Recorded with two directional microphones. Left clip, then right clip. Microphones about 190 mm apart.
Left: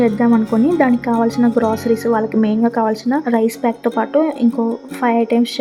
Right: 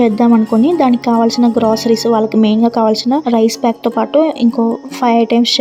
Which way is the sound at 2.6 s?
20° right (ahead or behind).